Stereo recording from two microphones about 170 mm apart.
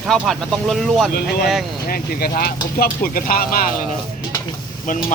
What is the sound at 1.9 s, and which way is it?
Speech, 60° left (ahead or behind).